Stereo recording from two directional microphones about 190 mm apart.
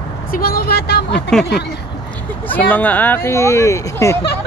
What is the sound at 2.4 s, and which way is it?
Speech, 10° left (ahead or behind).